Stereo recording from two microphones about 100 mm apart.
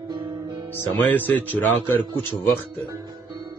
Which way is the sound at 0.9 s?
20° left (ahead or behind).